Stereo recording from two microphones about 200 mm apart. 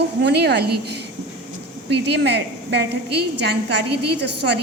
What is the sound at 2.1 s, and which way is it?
A woman's voice, 55° right (ahead or behind).